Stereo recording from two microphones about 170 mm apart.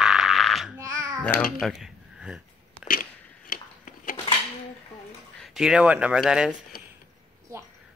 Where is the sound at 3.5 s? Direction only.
50° left (ahead or behind).